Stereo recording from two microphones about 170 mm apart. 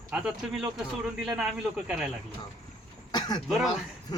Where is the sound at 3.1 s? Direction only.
25° left (ahead or behind).